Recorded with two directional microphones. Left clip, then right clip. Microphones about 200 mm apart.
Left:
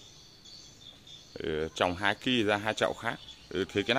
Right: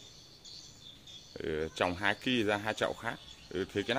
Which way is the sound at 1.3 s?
20° left (ahead or behind).